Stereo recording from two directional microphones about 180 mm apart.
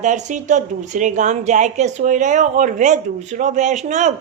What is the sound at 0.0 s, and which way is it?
A woman's voice, 40° right (ahead or behind).